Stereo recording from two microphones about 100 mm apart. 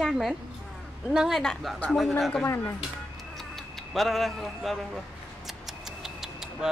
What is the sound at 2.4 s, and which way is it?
Speech, 25° left (ahead or behind).